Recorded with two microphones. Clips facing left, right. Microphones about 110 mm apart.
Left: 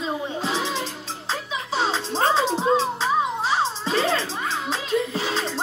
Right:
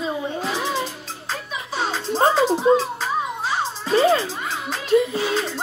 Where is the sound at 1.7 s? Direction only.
25° left (ahead or behind).